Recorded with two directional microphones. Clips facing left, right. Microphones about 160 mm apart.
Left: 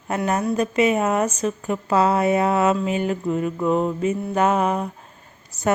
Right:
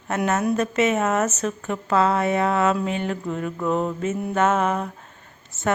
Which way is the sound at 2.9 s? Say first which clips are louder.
Left 3 dB; 10° left (ahead or behind).